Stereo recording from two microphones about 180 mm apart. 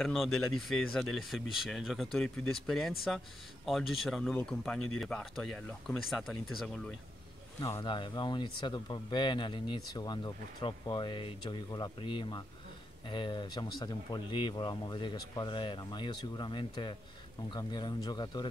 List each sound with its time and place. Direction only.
0.0 s speech: centre (ahead or behind)
7.6 s speech: 25° left (ahead or behind)